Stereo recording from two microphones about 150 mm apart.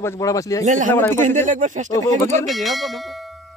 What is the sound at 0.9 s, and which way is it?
Speech, 15° left (ahead or behind).